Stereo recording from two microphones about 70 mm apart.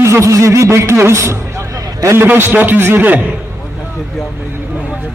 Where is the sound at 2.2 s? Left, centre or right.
Right.